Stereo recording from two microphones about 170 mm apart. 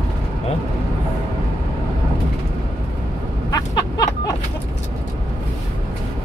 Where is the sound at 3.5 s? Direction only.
25° left (ahead or behind).